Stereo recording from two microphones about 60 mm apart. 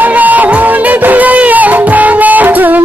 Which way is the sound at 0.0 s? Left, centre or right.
Right.